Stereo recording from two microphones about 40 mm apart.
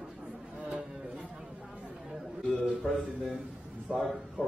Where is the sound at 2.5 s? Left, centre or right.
Centre.